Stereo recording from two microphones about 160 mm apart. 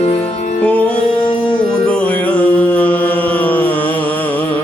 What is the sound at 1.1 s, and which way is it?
Music, 30° left (ahead or behind).